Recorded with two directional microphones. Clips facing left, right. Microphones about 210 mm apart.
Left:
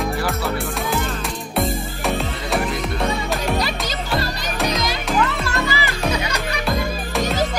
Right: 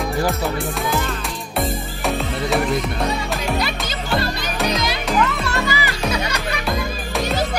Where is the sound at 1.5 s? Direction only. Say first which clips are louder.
Left 1 dB; centre (ahead or behind).